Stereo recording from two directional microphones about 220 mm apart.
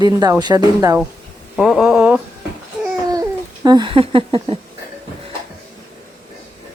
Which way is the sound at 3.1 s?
15° right (ahead or behind).